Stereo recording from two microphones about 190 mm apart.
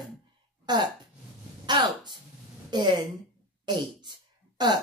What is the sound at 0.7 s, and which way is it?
Speech, 20° right (ahead or behind).